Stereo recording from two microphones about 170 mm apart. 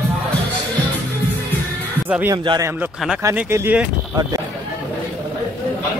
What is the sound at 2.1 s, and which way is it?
Speech, 10° right (ahead or behind).